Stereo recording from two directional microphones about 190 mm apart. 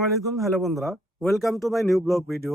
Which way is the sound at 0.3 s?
Centre (ahead or behind).